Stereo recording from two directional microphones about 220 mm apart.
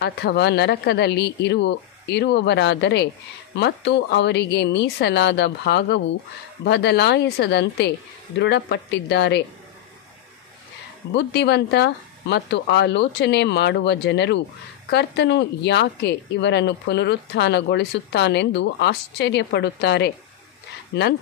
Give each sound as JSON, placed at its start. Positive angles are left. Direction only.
{"t": 0.0, "sound": "speech", "side_deg": 50}
{"t": 11.1, "sound": "speech", "side_deg": 50}